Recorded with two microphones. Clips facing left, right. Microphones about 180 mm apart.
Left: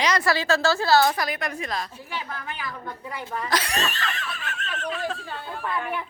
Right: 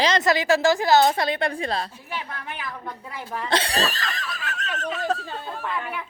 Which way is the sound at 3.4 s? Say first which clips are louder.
Right 4 dB; 30° right (ahead or behind).